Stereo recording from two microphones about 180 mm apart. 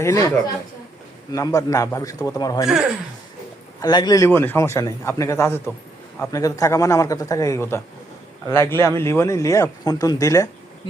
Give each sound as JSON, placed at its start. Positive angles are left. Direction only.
{"t": 0.0, "sound": "a man's voice", "side_deg": 15}
{"t": 3.8, "sound": "a man's voice", "side_deg": 25}